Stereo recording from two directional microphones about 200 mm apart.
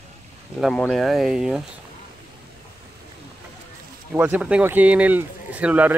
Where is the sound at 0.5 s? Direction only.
Centre (ahead or behind).